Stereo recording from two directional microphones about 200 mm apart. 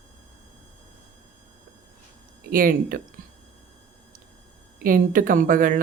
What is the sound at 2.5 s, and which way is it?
Speech, 45° right (ahead or behind).